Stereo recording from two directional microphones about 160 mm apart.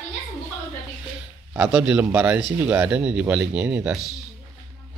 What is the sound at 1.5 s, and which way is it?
Speech, 10° right (ahead or behind).